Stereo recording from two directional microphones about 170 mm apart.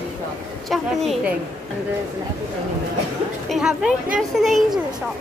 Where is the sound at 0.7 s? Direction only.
Centre (ahead or behind).